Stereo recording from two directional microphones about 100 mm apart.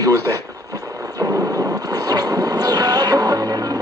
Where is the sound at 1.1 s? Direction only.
35° right (ahead or behind).